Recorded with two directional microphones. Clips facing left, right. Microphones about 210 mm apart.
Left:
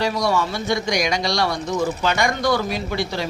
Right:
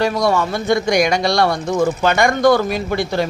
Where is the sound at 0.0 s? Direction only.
55° right (ahead or behind).